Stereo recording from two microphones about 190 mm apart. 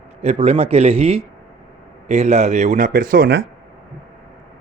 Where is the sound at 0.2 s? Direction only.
35° right (ahead or behind); by 3.4 s 60° right (ahead or behind).